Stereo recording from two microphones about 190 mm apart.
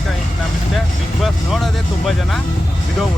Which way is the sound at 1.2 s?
Centre (ahead or behind).